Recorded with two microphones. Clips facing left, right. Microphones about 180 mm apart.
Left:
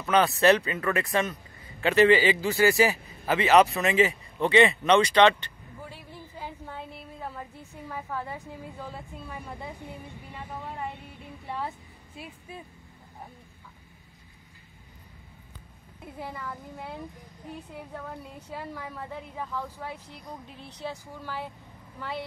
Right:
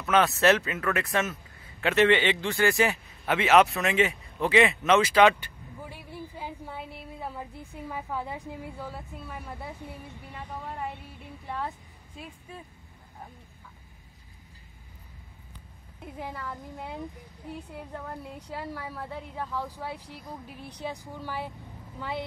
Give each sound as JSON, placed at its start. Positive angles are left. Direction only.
{"t": 0.0, "sound": "speech", "side_deg": 0}
{"t": 16.3, "sound": "a woman's voice", "side_deg": 0}